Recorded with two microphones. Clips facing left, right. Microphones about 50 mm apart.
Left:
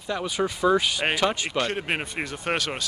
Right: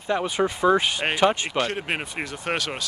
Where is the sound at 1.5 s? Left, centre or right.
Centre.